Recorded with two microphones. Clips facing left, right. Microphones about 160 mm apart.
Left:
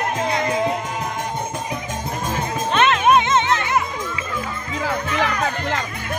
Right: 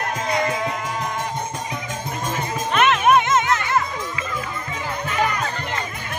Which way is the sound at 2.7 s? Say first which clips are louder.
Even; 25° left (ahead or behind).